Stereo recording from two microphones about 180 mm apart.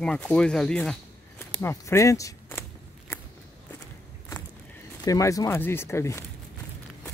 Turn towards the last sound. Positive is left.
turn(degrees=15)  # may be behind; listen again after turning